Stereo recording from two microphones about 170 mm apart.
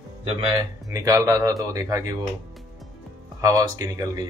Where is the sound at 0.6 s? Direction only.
20° right (ahead or behind).